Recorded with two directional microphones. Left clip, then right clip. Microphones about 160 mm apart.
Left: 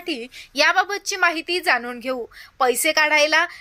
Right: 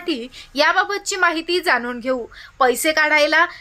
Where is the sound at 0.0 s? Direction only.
10° left (ahead or behind).